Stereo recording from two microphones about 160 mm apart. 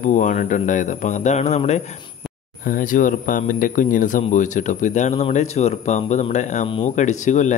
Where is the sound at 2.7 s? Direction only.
60° left (ahead or behind).